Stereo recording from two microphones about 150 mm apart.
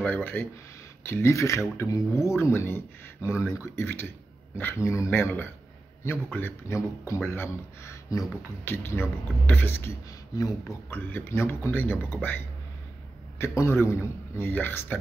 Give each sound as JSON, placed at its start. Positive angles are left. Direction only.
{"t": 0.0, "sound": "speech", "side_deg": 10}
{"t": 10.9, "sound": "speech", "side_deg": 15}
{"t": 13.4, "sound": "speech", "side_deg": 15}